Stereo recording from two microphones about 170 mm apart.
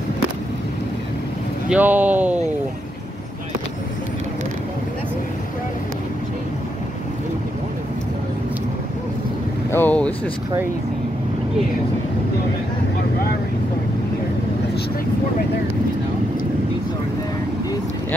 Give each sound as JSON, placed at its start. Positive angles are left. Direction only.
{"t": 1.7, "sound": "speech", "side_deg": -10}
{"t": 9.7, "sound": "boat", "side_deg": 10}